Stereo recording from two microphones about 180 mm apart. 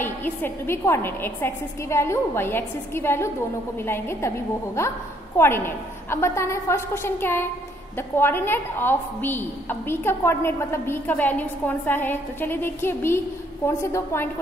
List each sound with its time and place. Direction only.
0.0 s a woman's voice: 10° left (ahead or behind)